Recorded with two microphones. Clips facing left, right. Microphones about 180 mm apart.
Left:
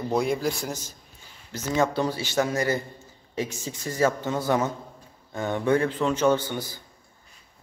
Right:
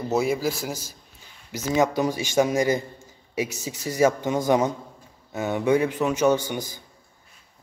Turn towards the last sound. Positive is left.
turn(degrees=-15)  # may be behind; listen again after turning